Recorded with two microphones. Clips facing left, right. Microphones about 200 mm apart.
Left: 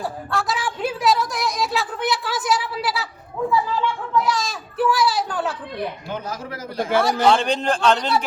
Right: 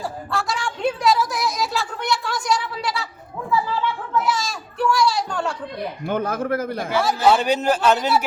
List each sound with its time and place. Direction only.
0.3 s a woman's voice: centre (ahead or behind)
4.2 s children playing: centre (ahead or behind)
6.1 s a man's voice: 55° right (ahead or behind)
7.0 s a man's voice: centre (ahead or behind)